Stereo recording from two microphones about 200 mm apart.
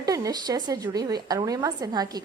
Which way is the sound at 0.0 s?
20° right (ahead or behind).